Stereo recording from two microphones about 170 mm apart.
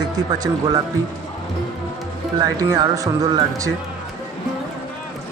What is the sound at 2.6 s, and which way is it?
Speech, 20° right (ahead or behind).